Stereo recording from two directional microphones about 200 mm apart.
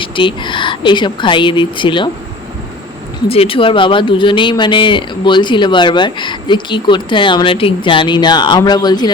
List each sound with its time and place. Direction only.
0.0 s speech: 25° left (ahead or behind)
3.2 s speech: 30° left (ahead or behind)